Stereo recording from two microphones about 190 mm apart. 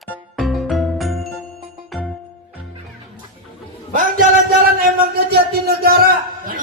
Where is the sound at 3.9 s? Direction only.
45° right (ahead or behind).